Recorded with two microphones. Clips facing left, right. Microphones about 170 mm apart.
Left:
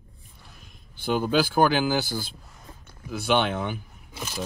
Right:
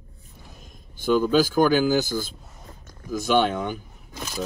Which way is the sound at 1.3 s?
45° right (ahead or behind).